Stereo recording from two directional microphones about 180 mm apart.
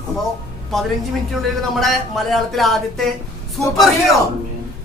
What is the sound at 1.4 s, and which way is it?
Speech, centre (ahead or behind).